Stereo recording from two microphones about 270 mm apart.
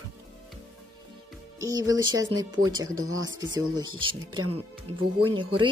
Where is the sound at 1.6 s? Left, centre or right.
Centre.